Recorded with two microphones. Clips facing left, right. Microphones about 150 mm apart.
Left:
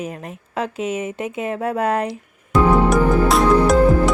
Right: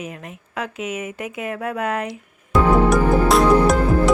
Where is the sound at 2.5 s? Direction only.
Centre (ahead or behind).